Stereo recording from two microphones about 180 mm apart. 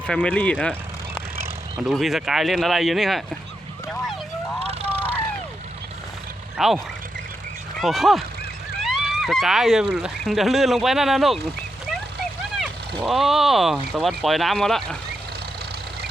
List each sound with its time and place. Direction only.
0.1 s speech: 5° left (ahead or behind)
1.9 s speech: centre (ahead or behind)
4.6 s vehicle: 35° right (ahead or behind)
6.6 s speech: centre (ahead or behind)
13.0 s speech: centre (ahead or behind)